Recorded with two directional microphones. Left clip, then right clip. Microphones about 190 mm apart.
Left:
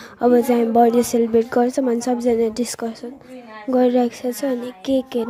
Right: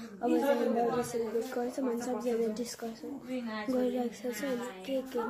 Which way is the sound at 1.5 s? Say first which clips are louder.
Left 15 dB; 45° left (ahead or behind).